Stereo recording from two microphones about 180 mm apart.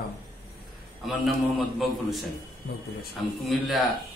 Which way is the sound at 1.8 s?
Centre (ahead or behind).